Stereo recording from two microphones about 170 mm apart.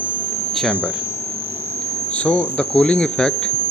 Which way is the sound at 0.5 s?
Centre (ahead or behind).